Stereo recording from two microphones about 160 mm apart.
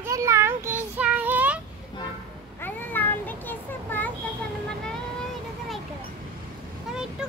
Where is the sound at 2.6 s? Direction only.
10° left (ahead or behind).